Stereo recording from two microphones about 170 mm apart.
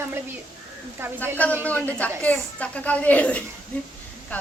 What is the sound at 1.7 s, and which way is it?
A child's voice, 10° left (ahead or behind).